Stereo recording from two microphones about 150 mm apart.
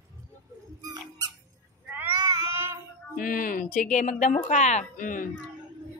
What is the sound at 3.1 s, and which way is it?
Speech, 70° left (ahead or behind).